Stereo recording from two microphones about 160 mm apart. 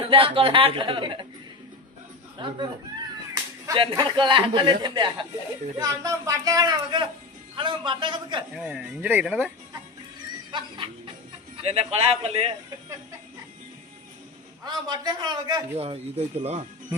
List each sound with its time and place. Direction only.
0.0 s a man's voice: 35° right (ahead or behind)
2.4 s a man's voice: 30° right (ahead or behind)
3.8 s a man's voice: 30° right (ahead or behind)
8.5 s speech: 5° right (ahead or behind)
10.5 s a sound: 30° right (ahead or behind)
11.5 s a man's voice: 40° right (ahead or behind)
14.7 s a man's voice: 25° right (ahead or behind); by 16.6 s 40° right (ahead or behind)